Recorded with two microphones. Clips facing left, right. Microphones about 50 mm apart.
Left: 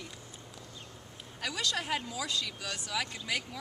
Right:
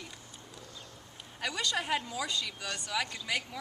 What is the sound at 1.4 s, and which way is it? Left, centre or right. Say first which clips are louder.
Speech: right 1 dB; centre.